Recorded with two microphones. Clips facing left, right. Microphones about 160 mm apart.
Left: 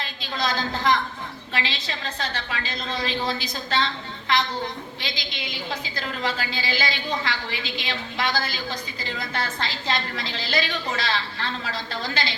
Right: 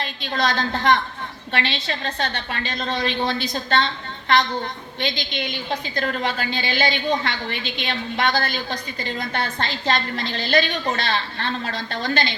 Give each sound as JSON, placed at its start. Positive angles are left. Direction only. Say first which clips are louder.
{"t": 0.0, "sound": "a woman's voice", "louder": "right 4 dB", "side_deg": -60}
{"t": 4.9, "sound": "a woman's voice", "louder": "right 7 dB", "side_deg": -60}